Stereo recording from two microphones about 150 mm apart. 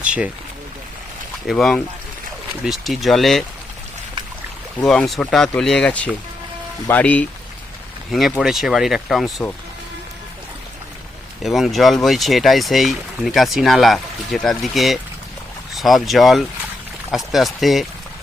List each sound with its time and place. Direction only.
0.0 s a sound: 10° right (ahead or behind)
1.5 s speech: 5° left (ahead or behind)
4.9 s speech: centre (ahead or behind)
8.1 s speech: centre (ahead or behind)
11.4 s speech: centre (ahead or behind)